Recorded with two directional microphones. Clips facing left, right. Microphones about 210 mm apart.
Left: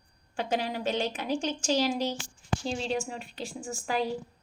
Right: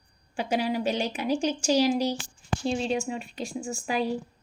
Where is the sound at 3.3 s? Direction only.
10° right (ahead or behind).